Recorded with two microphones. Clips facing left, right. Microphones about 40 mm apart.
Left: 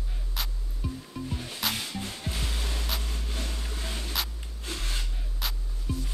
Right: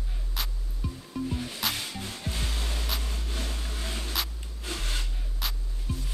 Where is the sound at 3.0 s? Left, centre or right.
Centre.